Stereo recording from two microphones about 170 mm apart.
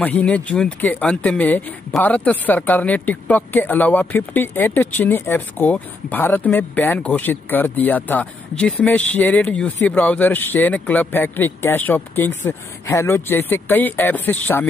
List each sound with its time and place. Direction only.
0.0 s speech: 10° left (ahead or behind)